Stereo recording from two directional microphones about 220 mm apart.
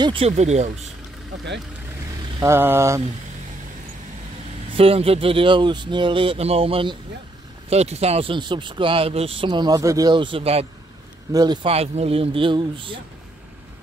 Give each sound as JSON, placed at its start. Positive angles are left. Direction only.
{"t": 0.0, "sound": "speech", "side_deg": -25}
{"t": 2.4, "sound": "vehicle", "side_deg": -10}
{"t": 4.7, "sound": "speech", "side_deg": -25}